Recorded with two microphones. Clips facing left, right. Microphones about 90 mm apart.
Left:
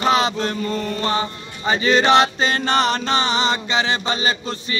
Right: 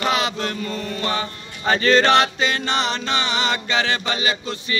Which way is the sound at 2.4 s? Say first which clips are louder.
Left 3 dB; 40° left (ahead or behind).